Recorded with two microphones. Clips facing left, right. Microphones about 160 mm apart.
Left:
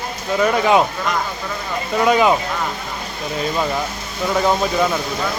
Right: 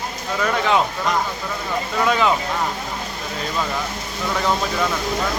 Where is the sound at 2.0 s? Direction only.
15° left (ahead or behind).